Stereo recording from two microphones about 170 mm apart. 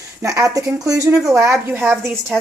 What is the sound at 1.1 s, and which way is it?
Speech, 5° right (ahead or behind).